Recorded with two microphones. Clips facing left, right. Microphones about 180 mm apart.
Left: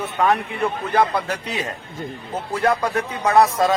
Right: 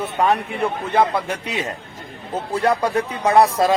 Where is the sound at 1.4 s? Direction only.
25° right (ahead or behind).